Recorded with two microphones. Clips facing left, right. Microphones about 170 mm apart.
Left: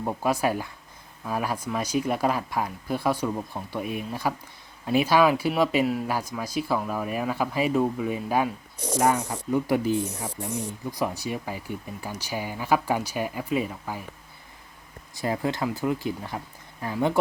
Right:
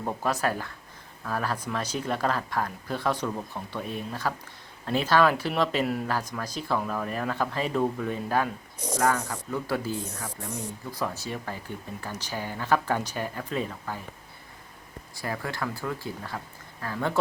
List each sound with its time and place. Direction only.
0.0 s speech: 10° left (ahead or behind)
15.1 s speech: 20° left (ahead or behind)